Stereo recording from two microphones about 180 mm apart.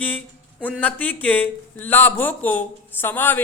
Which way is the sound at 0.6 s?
10° left (ahead or behind).